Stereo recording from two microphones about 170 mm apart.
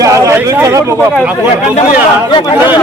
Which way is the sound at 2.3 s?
25° left (ahead or behind).